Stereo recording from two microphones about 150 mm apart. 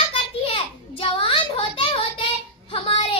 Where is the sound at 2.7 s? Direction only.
40° left (ahead or behind).